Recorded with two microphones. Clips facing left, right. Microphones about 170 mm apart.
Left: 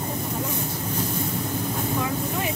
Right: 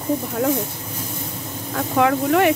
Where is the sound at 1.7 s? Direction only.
75° right (ahead or behind).